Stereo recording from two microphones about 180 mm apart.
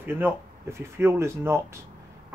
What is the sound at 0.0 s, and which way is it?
Speech, 10° right (ahead or behind).